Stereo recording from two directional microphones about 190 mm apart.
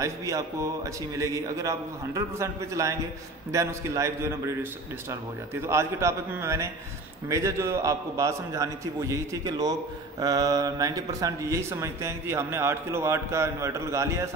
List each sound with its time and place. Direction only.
0.0 s speech: 15° right (ahead or behind)